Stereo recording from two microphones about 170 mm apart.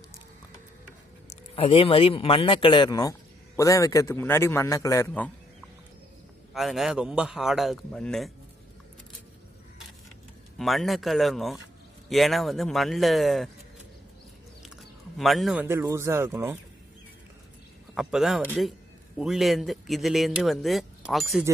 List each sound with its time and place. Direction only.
1.3 s a man's voice: 35° left (ahead or behind); by 5.3 s 10° left (ahead or behind)
6.5 s speech: centre (ahead or behind)
10.6 s speech: centre (ahead or behind)
15.1 s speech: centre (ahead or behind)
15.6 s speech: 15° right (ahead or behind)
17.9 s a man's voice: centre (ahead or behind)